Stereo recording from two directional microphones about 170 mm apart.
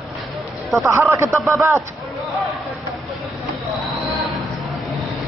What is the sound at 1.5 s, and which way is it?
Speech, 15° right (ahead or behind).